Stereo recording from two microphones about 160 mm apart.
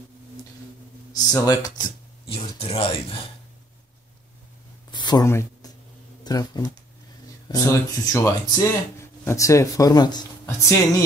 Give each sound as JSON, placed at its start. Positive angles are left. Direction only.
{"t": 1.1, "sound": "speech", "side_deg": 20}
{"t": 2.3, "sound": "speech", "side_deg": 40}
{"t": 4.9, "sound": "a sound", "side_deg": 25}
{"t": 6.2, "sound": "speech", "side_deg": 25}